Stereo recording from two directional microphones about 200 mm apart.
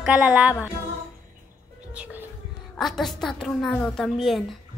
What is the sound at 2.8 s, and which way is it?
A woman's voice, centre (ahead or behind).